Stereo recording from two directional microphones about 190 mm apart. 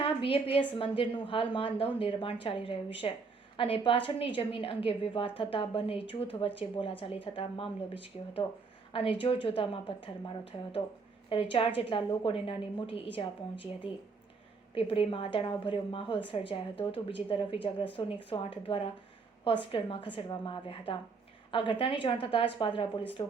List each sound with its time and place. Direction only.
0.0 s a woman's voice: 30° left (ahead or behind)
14.8 s a woman's voice: 30° left (ahead or behind)